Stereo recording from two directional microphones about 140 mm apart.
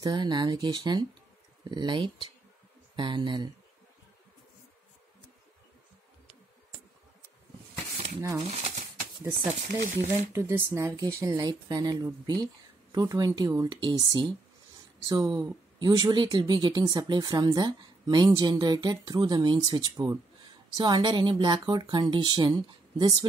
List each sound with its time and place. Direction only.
0.0 s speech: 30° right (ahead or behind)
8.2 s speech: 25° right (ahead or behind)
8.5 s speech: 50° right (ahead or behind)
9.7 s speech: 70° right (ahead or behind)
10.3 s speech: 15° right (ahead or behind)